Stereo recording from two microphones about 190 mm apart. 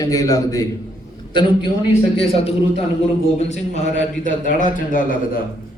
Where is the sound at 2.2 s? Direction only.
30° left (ahead or behind).